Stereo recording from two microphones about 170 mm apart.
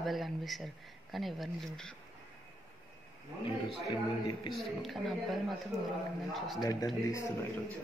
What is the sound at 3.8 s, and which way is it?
Speech, 25° left (ahead or behind).